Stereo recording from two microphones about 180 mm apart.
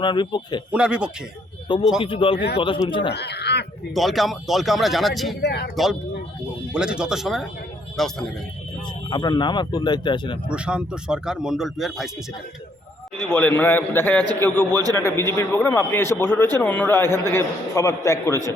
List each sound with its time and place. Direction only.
0.0 s speech: 25° left (ahead or behind)
0.7 s speech: 5° right (ahead or behind)
2.0 s speech: 30° left (ahead or behind)
3.1 s speech: 65° left (ahead or behind)
3.9 s speech: centre (ahead or behind)
5.4 s speech: 65° left (ahead or behind)
5.7 s speech: centre (ahead or behind)
9.0 s speech: 25° left (ahead or behind)
10.5 s speech: 5° right (ahead or behind)
13.3 s a man's voice: 10° left (ahead or behind)
14.7 s a man's voice: 20° right (ahead or behind)
14.9 s a man's voice: 15° left (ahead or behind)